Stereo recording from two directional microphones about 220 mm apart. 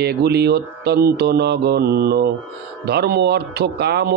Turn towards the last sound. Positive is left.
turn(degrees=-50)  # may be behind; listen again after turning